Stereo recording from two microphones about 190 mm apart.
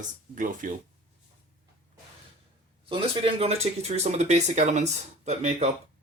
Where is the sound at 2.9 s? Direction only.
30° right (ahead or behind).